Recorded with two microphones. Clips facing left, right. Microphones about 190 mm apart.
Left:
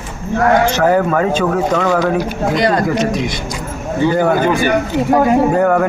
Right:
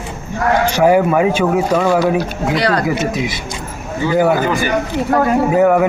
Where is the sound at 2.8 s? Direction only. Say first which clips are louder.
Left 2 dB; 5° right (ahead or behind).